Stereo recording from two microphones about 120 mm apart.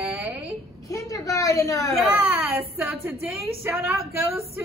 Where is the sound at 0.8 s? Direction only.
25° left (ahead or behind).